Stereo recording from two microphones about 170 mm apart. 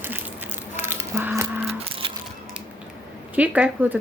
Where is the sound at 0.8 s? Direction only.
15° right (ahead or behind).